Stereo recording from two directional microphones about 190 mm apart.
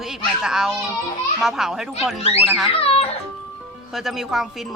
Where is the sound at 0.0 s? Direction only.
Centre (ahead or behind).